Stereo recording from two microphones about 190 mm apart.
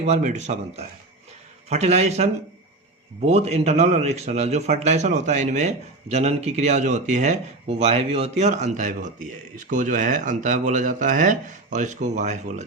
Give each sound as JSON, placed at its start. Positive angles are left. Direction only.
{"t": 0.0, "sound": "speech", "side_deg": -35}